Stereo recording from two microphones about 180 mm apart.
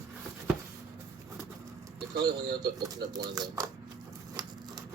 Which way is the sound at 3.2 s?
20° right (ahead or behind).